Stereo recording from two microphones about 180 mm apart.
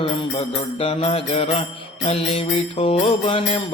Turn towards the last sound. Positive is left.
turn(degrees=30)  # may be behind; listen again after turning